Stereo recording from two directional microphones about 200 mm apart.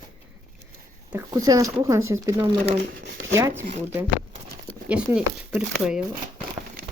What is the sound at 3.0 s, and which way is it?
Speech, 55° right (ahead or behind).